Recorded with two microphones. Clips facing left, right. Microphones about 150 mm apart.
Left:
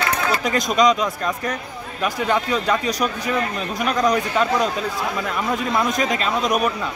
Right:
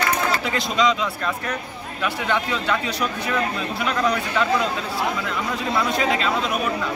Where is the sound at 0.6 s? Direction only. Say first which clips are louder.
Left 4 dB; 45° left (ahead or behind).